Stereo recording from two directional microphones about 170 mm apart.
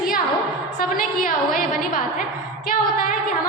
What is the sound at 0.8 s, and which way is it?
A woman's voice, 55° left (ahead or behind).